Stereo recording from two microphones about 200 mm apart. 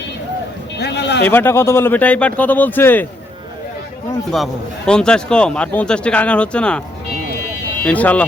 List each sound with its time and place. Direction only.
0.8 s a sound: 55° left (ahead or behind)
1.2 s speech: 10° left (ahead or behind)
4.9 s speech: 5° left (ahead or behind)
7.9 s speech: 5° left (ahead or behind)